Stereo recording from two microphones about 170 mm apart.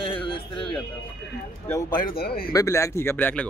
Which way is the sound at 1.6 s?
15° left (ahead or behind).